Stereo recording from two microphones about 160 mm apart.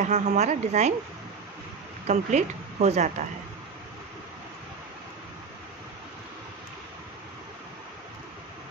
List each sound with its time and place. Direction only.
0.0 s a woman's voice: 45° right (ahead or behind)
2.0 s a woman's voice: 45° right (ahead or behind)